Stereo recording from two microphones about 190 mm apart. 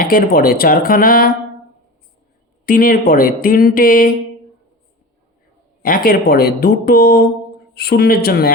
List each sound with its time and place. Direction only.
0.0 s speech: 50° left (ahead or behind)
2.6 s speech: 50° left (ahead or behind)
5.8 s speech: 50° left (ahead or behind)